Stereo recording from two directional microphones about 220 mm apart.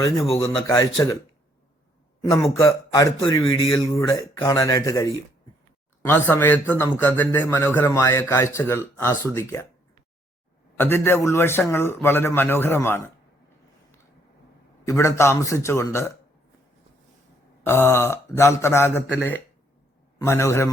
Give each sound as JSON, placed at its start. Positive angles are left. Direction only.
{"t": 0.7, "sound": "a man's voice", "side_deg": 15}
{"t": 2.3, "sound": "a man's voice", "side_deg": 15}
{"t": 6.1, "sound": "a man's voice", "side_deg": 10}
{"t": 10.8, "sound": "a man's voice", "side_deg": 10}
{"t": 14.8, "sound": "a man's voice", "side_deg": 15}
{"t": 17.7, "sound": "a man's voice", "side_deg": 10}